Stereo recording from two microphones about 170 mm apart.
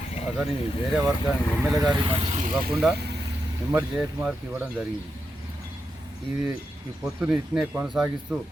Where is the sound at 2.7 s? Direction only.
Centre (ahead or behind).